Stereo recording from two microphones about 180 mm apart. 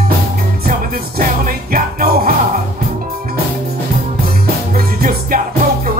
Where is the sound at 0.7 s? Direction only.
50° right (ahead or behind).